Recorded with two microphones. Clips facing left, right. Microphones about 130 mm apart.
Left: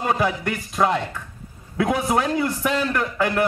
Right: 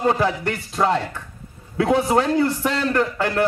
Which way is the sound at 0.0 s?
30° right (ahead or behind).